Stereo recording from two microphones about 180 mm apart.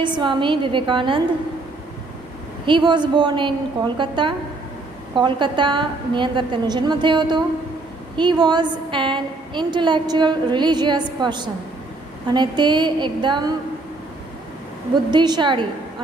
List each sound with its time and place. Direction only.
0.0 s a woman's voice: 25° right (ahead or behind)
2.6 s a woman's voice: 25° right (ahead or behind)
15.0 s a woman's voice: 25° right (ahead or behind)